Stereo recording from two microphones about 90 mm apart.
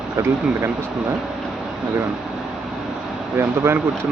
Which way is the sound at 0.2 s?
30° right (ahead or behind).